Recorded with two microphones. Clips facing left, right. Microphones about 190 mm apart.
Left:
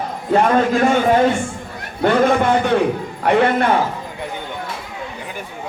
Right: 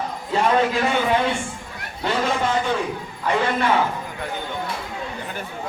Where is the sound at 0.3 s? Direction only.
50° left (ahead or behind).